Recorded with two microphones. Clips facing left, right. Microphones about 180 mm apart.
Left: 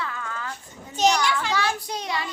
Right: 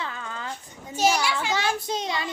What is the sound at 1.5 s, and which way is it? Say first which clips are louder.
Speech: even; 20° right (ahead or behind).